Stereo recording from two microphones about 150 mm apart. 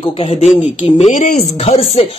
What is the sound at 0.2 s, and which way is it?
Speech, 40° left (ahead or behind).